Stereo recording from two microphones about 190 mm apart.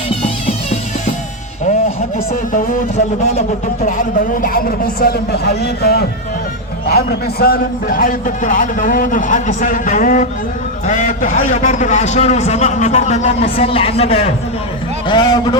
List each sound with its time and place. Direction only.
0.2 s music: 35° left (ahead or behind)
2.1 s a man's voice: 45° left (ahead or behind)
3.8 s a man's voice: 45° left (ahead or behind); by 15.5 s 20° left (ahead or behind)